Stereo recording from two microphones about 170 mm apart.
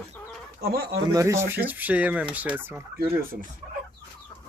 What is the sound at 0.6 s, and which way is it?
Speech, 65° right (ahead or behind).